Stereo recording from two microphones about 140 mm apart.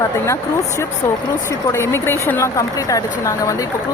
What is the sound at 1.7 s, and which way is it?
Speech, 20° left (ahead or behind).